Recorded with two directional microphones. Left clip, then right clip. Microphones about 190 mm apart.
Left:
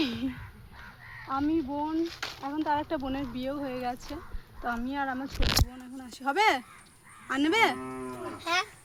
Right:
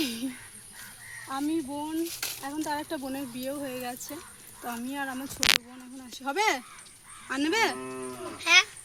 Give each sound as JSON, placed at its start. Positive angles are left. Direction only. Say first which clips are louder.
{"t": 0.0, "sound": "crow", "louder": "left 1 dB", "side_deg": -10}
{"t": 1.3, "sound": "speech", "louder": "left 2 dB", "side_deg": 0}
{"t": 6.0, "sound": "speech", "louder": "left 2 dB", "side_deg": 15}
{"t": 7.8, "sound": "cattle", "louder": "right 1 dB", "side_deg": -30}
{"t": 8.4, "sound": "speech", "louder": "right 9 dB", "side_deg": -15}